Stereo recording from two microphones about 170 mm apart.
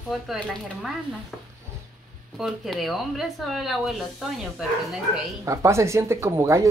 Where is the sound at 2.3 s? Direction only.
Centre (ahead or behind).